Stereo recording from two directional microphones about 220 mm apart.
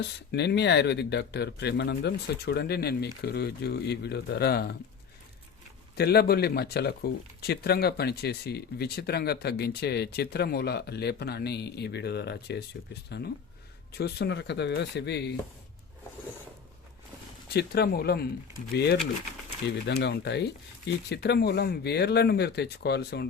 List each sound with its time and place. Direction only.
0.0 s speech: 50° left (ahead or behind)
6.0 s speech: 45° left (ahead or behind)
17.5 s speech: 45° left (ahead or behind)